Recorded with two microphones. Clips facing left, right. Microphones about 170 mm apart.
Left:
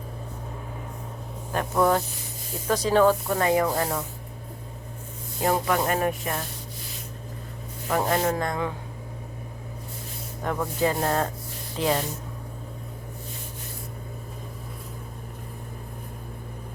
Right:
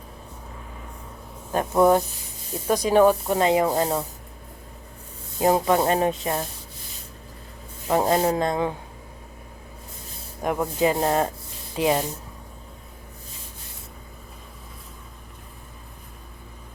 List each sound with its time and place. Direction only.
1.5 s rub: 20° right (ahead or behind)
5.4 s rub: 20° right (ahead or behind)
7.9 s rub: 25° right (ahead or behind)
10.4 s speech: 15° right (ahead or behind)